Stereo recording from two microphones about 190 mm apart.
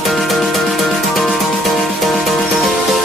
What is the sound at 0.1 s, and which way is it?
Music, centre (ahead or behind).